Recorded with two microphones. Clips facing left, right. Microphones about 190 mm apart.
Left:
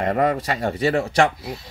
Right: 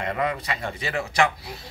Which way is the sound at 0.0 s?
45° left (ahead or behind).